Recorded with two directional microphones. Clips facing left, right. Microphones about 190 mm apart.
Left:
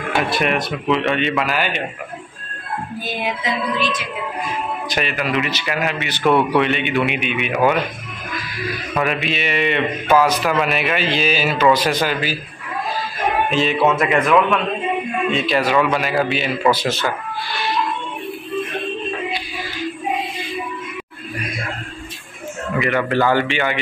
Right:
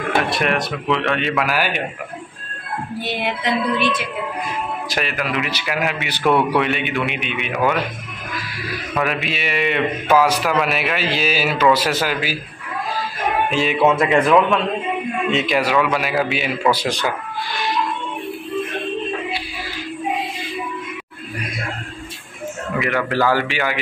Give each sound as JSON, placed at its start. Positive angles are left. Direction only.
{"t": 0.2, "sound": "a man's voice", "side_deg": 0}
{"t": 3.1, "sound": "music", "side_deg": -65}
{"t": 4.8, "sound": "a man's voice", "side_deg": 0}
{"t": 8.9, "sound": "a man's voice", "side_deg": 0}
{"t": 13.5, "sound": "speech", "side_deg": -10}
{"t": 13.9, "sound": "a man's voice", "side_deg": -25}
{"t": 15.3, "sound": "speech", "side_deg": -15}
{"t": 15.7, "sound": "speech", "side_deg": -5}
{"t": 22.8, "sound": "a man's voice", "side_deg": 0}